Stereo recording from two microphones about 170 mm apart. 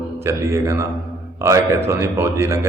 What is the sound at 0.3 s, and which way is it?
A man's voice, 15° right (ahead or behind).